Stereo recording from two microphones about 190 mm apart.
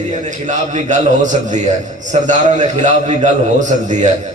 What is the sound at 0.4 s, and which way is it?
A man's voice, 40° right (ahead or behind).